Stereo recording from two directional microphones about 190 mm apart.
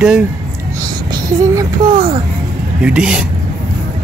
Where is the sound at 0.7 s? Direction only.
20° right (ahead or behind).